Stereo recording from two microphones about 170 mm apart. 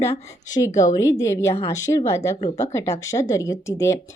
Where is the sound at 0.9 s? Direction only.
20° left (ahead or behind).